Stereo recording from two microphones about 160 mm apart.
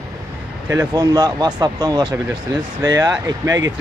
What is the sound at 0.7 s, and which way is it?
Speech, 20° right (ahead or behind).